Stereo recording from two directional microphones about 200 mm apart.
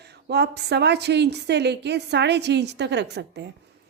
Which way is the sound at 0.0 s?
55° right (ahead or behind).